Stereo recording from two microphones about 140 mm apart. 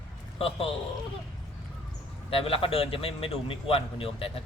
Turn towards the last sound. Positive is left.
turn(degrees=40)  # may be behind; listen again after turning